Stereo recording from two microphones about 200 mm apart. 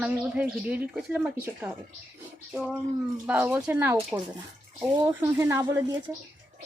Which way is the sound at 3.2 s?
10° right (ahead or behind).